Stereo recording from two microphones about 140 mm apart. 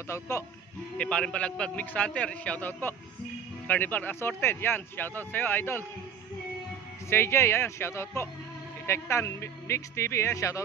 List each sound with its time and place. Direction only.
0.9 s speech: 5° left (ahead or behind)
7.1 s a man's voice: 20° left (ahead or behind)